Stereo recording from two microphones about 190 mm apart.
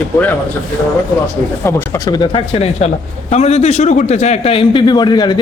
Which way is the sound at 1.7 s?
15° left (ahead or behind).